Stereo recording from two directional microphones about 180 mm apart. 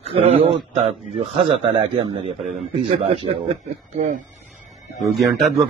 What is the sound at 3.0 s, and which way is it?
Speech, 40° right (ahead or behind).